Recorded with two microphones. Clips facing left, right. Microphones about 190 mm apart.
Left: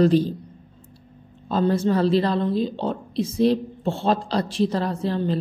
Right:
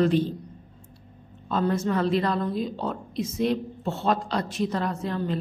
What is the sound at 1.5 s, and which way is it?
A woman's voice, 30° left (ahead or behind).